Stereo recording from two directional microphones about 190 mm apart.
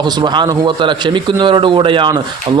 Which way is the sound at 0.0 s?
25° right (ahead or behind).